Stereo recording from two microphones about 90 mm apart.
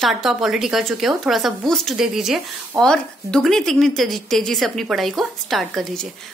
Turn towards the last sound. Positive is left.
turn(degrees=0)  # may be behind; listen again after turning